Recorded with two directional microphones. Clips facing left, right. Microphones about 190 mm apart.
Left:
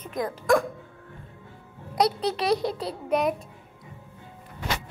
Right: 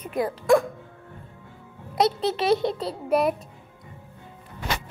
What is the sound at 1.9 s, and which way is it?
A child's voice, centre (ahead or behind).